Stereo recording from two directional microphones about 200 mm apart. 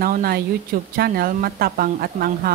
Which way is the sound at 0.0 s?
45° right (ahead or behind).